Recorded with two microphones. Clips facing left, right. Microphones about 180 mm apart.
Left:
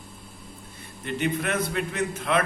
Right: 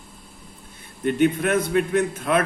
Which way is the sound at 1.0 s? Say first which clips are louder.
Right 8 dB; 50° right (ahead or behind).